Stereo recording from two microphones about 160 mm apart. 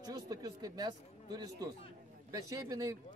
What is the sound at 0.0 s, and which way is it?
Speech, 25° right (ahead or behind).